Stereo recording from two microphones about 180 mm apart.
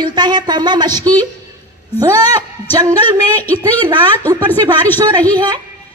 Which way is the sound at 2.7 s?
20° right (ahead or behind).